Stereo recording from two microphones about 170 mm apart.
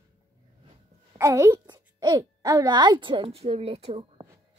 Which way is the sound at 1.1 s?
15° right (ahead or behind).